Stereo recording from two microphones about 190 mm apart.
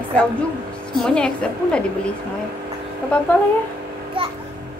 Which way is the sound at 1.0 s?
5° left (ahead or behind).